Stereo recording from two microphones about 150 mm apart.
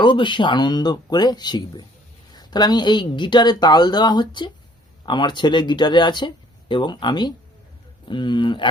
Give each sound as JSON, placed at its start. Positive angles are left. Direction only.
{"t": 0.0, "sound": "speech", "side_deg": 30}